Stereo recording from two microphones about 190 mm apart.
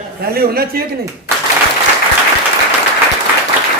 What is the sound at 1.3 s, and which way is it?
Applause, 10° right (ahead or behind).